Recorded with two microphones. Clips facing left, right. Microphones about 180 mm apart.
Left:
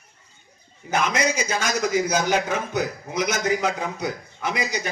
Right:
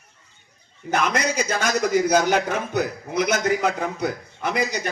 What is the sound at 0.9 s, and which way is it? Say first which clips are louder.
A man's voice: even; 60° right (ahead or behind).